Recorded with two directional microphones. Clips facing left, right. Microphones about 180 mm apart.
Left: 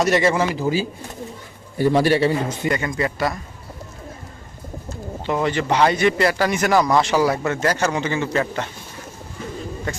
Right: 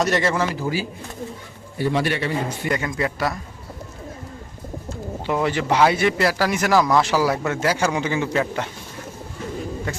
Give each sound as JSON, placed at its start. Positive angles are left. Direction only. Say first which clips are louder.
{"t": 0.0, "sound": "speech", "louder": "left 3 dB", "side_deg": 10}
{"t": 1.8, "sound": "a man's voice", "louder": "left 6 dB", "side_deg": 40}
{"t": 2.6, "sound": "speech", "louder": "left 2 dB", "side_deg": 0}
{"t": 5.2, "sound": "speech", "louder": "left 1 dB", "side_deg": -5}